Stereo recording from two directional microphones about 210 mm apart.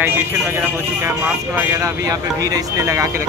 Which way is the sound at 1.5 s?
15° right (ahead or behind).